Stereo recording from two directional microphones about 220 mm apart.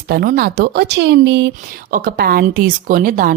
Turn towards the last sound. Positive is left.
turn(degrees=-40)  # may be behind; listen again after turning